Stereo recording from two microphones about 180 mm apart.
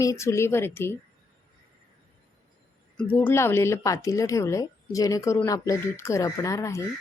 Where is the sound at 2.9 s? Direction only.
10° left (ahead or behind).